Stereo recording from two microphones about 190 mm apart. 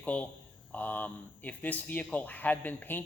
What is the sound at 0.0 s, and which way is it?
Speech, 5° left (ahead or behind).